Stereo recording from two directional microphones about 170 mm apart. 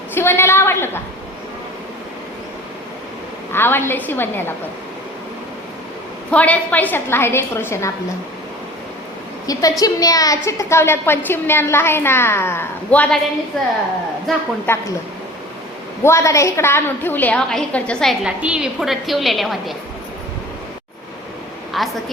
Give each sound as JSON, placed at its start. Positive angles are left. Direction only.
{"t": 0.1, "sound": "a woman's voice", "side_deg": 15}
{"t": 3.5, "sound": "a woman's voice", "side_deg": 15}
{"t": 6.3, "sound": "a woman's voice", "side_deg": 10}
{"t": 9.5, "sound": "a woman's voice", "side_deg": 20}
{"t": 14.3, "sound": "a woman's voice", "side_deg": 0}
{"t": 14.7, "sound": "a woman's voice", "side_deg": 15}
{"t": 16.0, "sound": "a woman's voice", "side_deg": 15}
{"t": 21.7, "sound": "a woman's voice", "side_deg": 0}